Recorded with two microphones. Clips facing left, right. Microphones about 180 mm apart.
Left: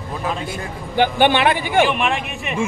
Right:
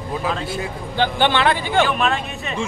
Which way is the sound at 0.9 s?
15° left (ahead or behind).